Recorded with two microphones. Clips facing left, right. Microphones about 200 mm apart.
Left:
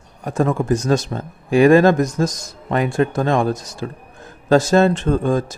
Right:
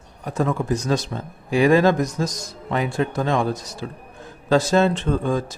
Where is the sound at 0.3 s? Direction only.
50° left (ahead or behind).